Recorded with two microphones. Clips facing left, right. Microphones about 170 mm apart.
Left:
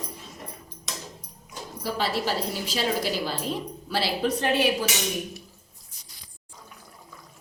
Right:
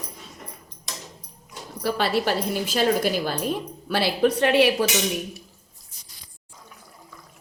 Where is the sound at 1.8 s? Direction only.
60° right (ahead or behind).